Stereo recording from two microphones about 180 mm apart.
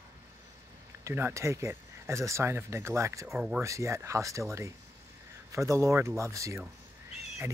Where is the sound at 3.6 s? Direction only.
15° right (ahead or behind).